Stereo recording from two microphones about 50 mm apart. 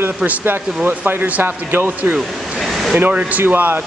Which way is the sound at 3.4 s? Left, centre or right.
Right.